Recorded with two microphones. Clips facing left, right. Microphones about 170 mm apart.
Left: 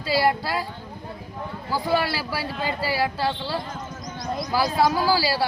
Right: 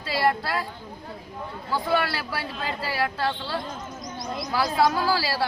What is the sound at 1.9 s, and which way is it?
Speech, 30° left (ahead or behind).